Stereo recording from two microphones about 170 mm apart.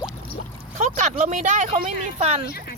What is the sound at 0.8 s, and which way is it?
Speech, 45° right (ahead or behind).